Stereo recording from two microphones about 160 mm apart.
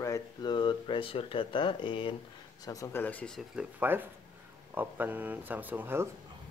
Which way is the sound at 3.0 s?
10° left (ahead or behind).